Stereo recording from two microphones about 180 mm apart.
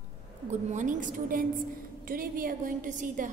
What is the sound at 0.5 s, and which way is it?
A woman's voice, 40° right (ahead or behind).